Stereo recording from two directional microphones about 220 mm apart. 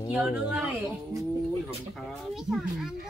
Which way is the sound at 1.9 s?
Centre (ahead or behind).